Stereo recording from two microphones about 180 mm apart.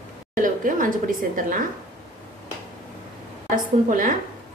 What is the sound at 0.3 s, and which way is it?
A woman's voice, 45° right (ahead or behind).